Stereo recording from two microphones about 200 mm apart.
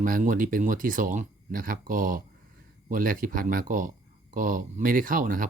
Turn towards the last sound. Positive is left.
turn(degrees=-45)  # may be behind; listen again after turning